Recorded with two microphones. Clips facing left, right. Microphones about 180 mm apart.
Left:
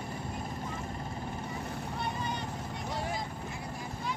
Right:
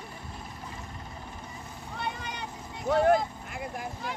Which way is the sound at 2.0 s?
65° right (ahead or behind).